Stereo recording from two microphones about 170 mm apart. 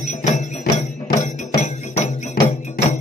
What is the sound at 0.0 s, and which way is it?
Music, 40° left (ahead or behind).